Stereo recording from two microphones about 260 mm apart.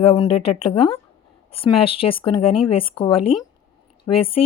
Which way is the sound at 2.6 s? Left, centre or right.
Left.